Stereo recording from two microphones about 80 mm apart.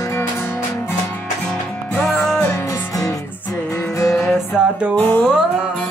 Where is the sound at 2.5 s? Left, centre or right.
Left.